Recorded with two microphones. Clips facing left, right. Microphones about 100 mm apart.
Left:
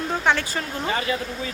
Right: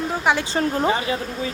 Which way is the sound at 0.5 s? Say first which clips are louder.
Right 8 dB; 35° right (ahead or behind).